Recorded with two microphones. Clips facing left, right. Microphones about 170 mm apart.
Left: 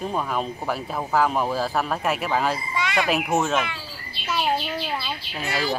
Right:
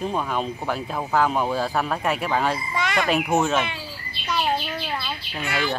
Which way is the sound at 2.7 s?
50° right (ahead or behind).